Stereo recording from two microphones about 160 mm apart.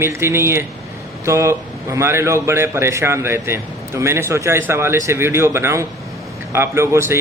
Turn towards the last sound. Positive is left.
turn(degrees=-15)  # may be behind; listen again after turning